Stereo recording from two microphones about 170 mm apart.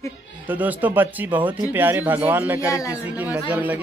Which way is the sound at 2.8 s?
20° left (ahead or behind).